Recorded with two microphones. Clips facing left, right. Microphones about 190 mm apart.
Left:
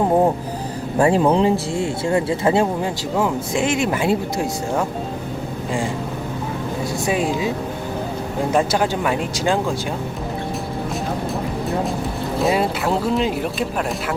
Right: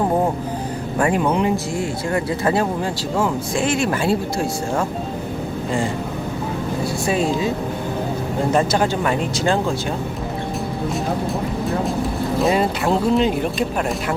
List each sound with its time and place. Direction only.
0.9 s speech: 30° left (ahead or behind)
7.1 s speech: 10° left (ahead or behind)
8.5 s speech: 5° left (ahead or behind)
12.4 s speech: centre (ahead or behind)